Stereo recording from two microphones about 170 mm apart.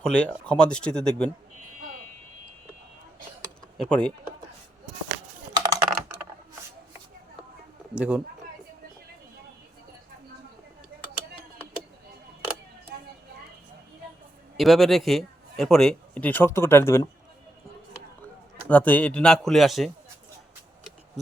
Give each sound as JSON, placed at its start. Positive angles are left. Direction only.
{"t": 0.0, "sound": "a man's voice", "side_deg": 5}
{"t": 3.8, "sound": "a man's voice", "side_deg": 5}
{"t": 5.6, "sound": "typing", "side_deg": -15}
{"t": 7.9, "sound": "speech", "side_deg": -10}
{"t": 14.5, "sound": "a man's voice", "side_deg": 0}
{"t": 18.7, "sound": "a man's voice", "side_deg": 10}